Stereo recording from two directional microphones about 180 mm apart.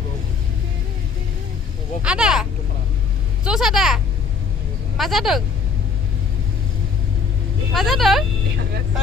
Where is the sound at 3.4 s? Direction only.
5° right (ahead or behind).